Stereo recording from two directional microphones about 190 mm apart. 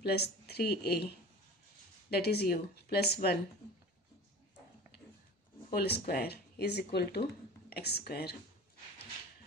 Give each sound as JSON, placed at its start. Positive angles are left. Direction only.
{"t": 0.0, "sound": "speech", "side_deg": 60}
{"t": 2.0, "sound": "speech", "side_deg": 55}
{"t": 5.7, "sound": "speech", "side_deg": 60}